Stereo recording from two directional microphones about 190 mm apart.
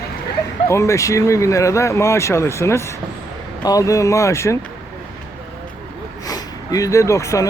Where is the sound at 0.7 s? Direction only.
15° left (ahead or behind).